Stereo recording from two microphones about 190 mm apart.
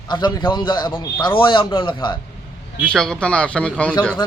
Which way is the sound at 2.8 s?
5° left (ahead or behind).